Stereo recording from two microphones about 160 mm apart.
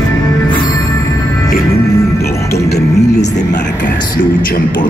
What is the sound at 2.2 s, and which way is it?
Music, 85° left.